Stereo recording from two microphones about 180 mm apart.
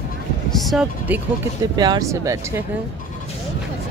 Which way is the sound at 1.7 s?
20° right (ahead or behind).